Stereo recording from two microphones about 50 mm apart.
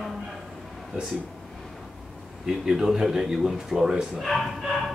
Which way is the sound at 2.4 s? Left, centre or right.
Centre.